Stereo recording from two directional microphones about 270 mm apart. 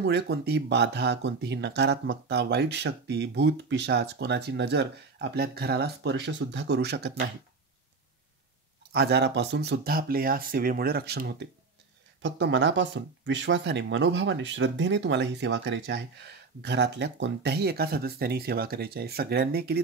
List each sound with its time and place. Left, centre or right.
0.0 s speech: right
8.9 s speech: right